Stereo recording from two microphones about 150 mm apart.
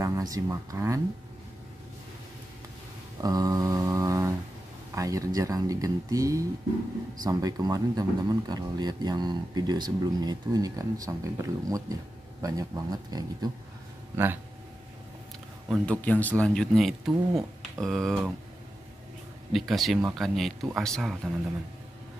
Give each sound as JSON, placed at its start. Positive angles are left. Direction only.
{"t": 0.0, "sound": "speech", "side_deg": -20}
{"t": 3.2, "sound": "a sound", "side_deg": -25}
{"t": 4.9, "sound": "speech", "side_deg": -20}
{"t": 14.1, "sound": "speech", "side_deg": -15}
{"t": 15.7, "sound": "speech", "side_deg": 5}
{"t": 19.5, "sound": "speech", "side_deg": 0}